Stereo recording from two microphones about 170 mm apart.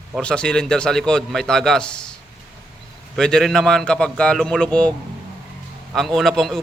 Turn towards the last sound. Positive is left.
turn(degrees=0)  # may be behind; listen again after turning